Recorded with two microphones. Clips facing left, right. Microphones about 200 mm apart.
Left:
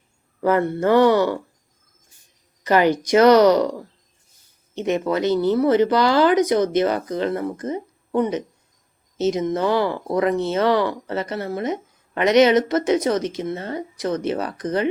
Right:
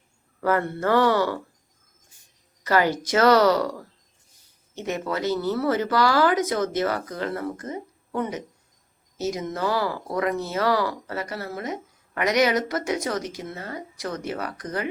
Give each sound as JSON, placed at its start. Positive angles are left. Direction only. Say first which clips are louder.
{"t": 0.4, "sound": "speech", "louder": "left 5 dB", "side_deg": 15}
{"t": 2.6, "sound": "speech", "louder": "left 5 dB", "side_deg": 20}
{"t": 4.7, "sound": "speech", "louder": "left 7 dB", "side_deg": 20}